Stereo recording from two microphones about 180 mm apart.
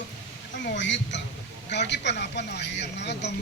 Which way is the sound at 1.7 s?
75° left (ahead or behind).